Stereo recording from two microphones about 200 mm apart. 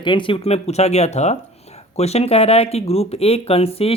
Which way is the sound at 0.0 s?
25° left (ahead or behind).